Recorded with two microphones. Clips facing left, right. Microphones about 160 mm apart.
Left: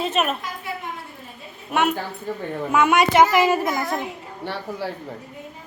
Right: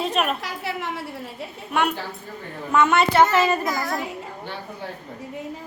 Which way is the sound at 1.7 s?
Centre (ahead or behind).